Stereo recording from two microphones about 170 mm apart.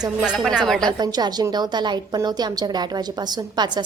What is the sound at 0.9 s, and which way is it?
A woman's voice, 25° right (ahead or behind).